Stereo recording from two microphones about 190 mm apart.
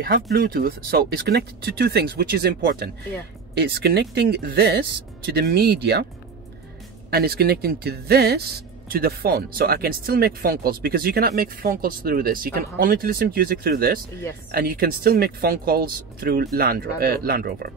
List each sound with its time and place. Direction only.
0.1 s speech: 55° right (ahead or behind)
7.1 s a man's voice: 55° right (ahead or behind)